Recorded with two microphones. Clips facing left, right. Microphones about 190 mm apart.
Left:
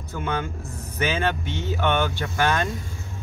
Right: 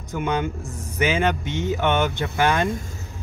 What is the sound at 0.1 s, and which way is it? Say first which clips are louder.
Speech: right 4 dB; 15° right (ahead or behind).